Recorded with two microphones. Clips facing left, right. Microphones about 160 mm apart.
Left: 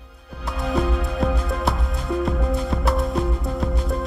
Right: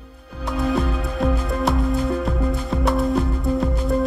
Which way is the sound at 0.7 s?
Centre (ahead or behind).